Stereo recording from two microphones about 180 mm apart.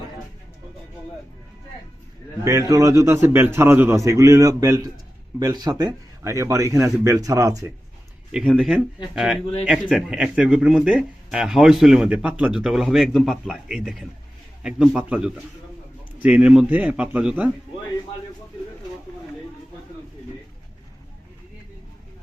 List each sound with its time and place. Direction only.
2.4 s a man's voice: 20° right (ahead or behind)
8.3 s a man's voice: 5° right (ahead or behind)